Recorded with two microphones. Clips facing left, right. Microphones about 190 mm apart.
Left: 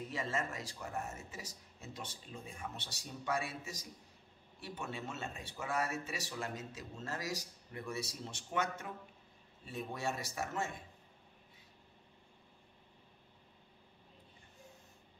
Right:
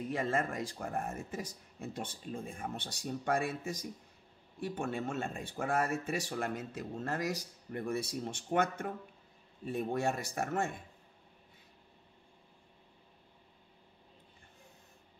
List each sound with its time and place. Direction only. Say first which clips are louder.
0.1 s speech: right 7 dB; 55° right (ahead or behind)